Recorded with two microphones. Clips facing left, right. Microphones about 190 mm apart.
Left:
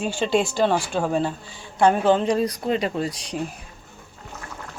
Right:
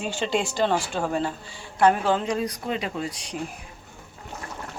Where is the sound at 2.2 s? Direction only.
35° left (ahead or behind).